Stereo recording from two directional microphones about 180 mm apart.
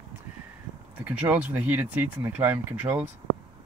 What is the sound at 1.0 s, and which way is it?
Speech, 10° right (ahead or behind).